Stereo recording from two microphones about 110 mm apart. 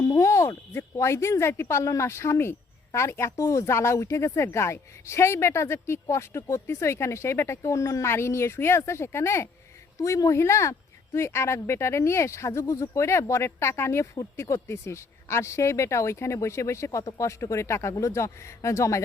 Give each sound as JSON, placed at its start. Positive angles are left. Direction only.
{"t": 0.0, "sound": "speech", "side_deg": 25}